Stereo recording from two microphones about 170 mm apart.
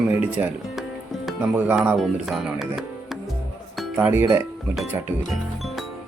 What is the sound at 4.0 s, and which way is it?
Speech, 15° right (ahead or behind).